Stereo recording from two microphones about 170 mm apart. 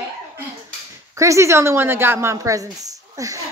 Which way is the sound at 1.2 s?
15° right (ahead or behind).